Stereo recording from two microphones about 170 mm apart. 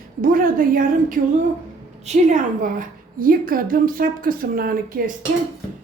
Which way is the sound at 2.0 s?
40° right (ahead or behind).